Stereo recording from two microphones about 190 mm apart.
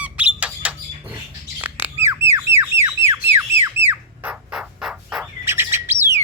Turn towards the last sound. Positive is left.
turn(degrees=-15)  # may be behind; listen again after turning